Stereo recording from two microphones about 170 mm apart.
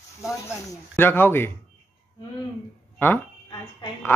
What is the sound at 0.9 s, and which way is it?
Speech, 10° left (ahead or behind).